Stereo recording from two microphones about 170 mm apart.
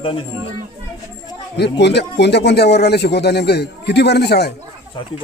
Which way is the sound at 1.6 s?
85° left.